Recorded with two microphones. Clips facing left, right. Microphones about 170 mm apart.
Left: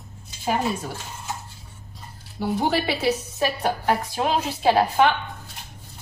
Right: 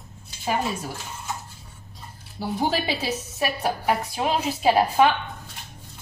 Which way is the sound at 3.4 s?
5° right (ahead or behind).